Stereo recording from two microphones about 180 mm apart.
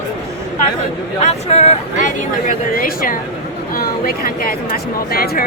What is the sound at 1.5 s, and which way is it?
A woman's voice, 40° left (ahead or behind).